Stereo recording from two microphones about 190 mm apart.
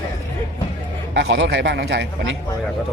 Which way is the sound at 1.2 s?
65° right (ahead or behind).